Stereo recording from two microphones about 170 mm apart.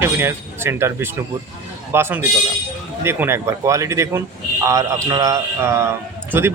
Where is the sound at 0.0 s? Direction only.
15° right (ahead or behind).